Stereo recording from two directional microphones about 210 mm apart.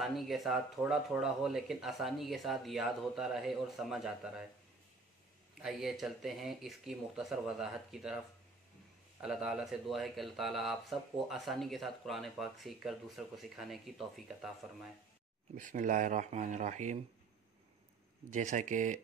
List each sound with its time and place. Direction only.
0.0 s speech: centre (ahead or behind)
5.6 s speech: centre (ahead or behind)
9.2 s speech: 5° right (ahead or behind)
15.5 s speech: 40° right (ahead or behind)
18.3 s speech: 35° right (ahead or behind)